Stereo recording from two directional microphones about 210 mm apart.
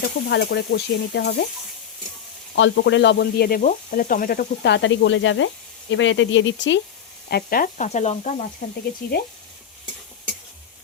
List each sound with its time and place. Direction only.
0.0 s stir: 55° left (ahead or behind)
2.6 s sizzle: 60° left (ahead or behind)
7.3 s speech: 45° left (ahead or behind)